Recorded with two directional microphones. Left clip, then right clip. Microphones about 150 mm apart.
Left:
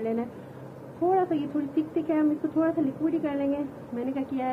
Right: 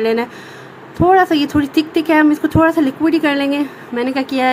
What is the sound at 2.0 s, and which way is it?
Speech, 55° right (ahead or behind).